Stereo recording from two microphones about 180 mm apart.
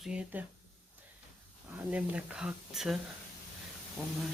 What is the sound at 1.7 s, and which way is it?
Speech, 10° right (ahead or behind).